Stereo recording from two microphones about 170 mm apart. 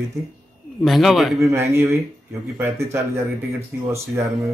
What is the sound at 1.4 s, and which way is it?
A man's voice, 15° right (ahead or behind).